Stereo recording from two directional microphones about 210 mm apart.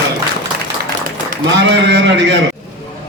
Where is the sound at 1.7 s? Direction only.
55° right (ahead or behind).